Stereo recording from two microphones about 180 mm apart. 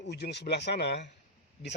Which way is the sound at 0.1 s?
70° left (ahead or behind).